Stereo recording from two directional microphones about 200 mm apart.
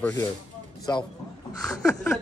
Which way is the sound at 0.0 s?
15° left (ahead or behind).